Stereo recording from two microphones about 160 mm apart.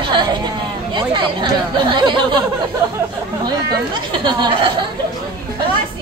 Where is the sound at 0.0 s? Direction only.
30° right (ahead or behind).